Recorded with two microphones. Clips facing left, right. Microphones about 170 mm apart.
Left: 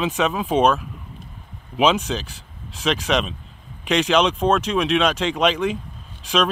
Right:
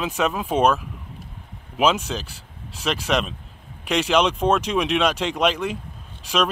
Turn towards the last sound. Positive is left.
turn(degrees=-10)  # may be behind; listen again after turning